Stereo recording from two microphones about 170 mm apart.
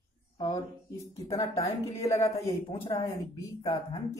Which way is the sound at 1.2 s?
20° left (ahead or behind).